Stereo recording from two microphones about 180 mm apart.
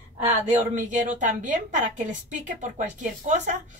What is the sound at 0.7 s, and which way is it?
A woman's voice, 45° right (ahead or behind).